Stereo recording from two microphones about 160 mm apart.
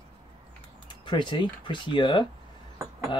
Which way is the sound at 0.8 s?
30° left (ahead or behind).